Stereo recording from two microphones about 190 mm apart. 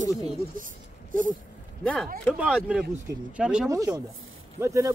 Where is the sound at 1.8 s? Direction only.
5° left (ahead or behind).